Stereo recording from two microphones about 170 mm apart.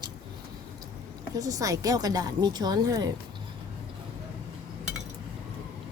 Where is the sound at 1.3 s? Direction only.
20° right (ahead or behind).